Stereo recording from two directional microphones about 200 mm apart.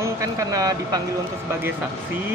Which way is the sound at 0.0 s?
15° right (ahead or behind).